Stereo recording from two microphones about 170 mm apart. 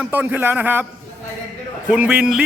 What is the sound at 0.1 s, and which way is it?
Speech, 10° right (ahead or behind).